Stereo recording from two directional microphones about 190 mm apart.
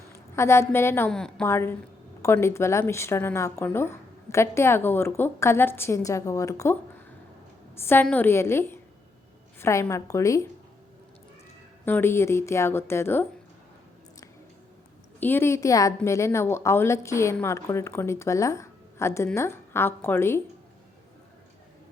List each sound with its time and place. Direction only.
0.1 s a woman's voice: 15° left (ahead or behind)
7.8 s a woman's voice: 10° left (ahead or behind)
11.9 s a woman's voice: 10° left (ahead or behind)
15.2 s a woman's voice: 10° left (ahead or behind)